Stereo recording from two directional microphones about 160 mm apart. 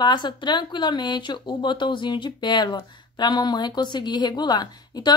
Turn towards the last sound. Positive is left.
turn(degrees=25)  # may be behind; listen again after turning